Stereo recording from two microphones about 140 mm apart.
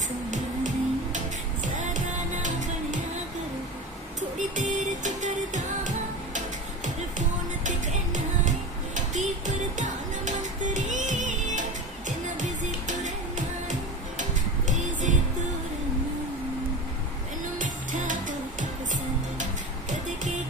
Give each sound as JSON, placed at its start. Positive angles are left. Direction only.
{"t": 0.3, "sound": "music", "side_deg": -60}
{"t": 4.4, "sound": "music", "side_deg": -60}
{"t": 14.7, "sound": "music", "side_deg": -60}
{"t": 17.6, "sound": "music", "side_deg": -65}